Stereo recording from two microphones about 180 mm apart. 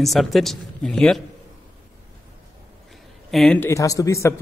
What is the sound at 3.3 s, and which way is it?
Speech, 5° left (ahead or behind).